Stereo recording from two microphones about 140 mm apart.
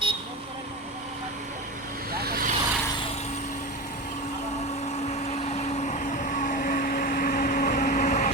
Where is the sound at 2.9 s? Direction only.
45° left (ahead or behind); by 8.3 s 60° left (ahead or behind).